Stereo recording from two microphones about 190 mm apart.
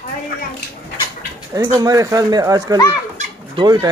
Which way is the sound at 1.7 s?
20° right (ahead or behind).